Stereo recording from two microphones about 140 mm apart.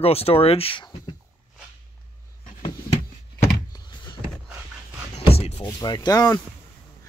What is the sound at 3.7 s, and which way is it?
Door, 30° left (ahead or behind).